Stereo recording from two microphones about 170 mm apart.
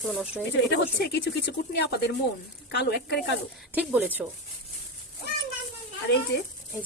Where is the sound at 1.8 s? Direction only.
75° left (ahead or behind).